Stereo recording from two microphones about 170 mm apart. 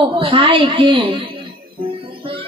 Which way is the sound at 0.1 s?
30° right (ahead or behind).